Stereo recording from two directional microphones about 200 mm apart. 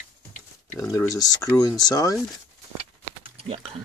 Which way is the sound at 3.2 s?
30° right (ahead or behind).